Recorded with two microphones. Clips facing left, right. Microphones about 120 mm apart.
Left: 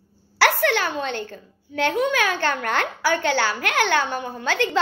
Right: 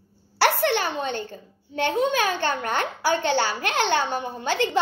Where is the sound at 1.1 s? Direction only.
20° right (ahead or behind).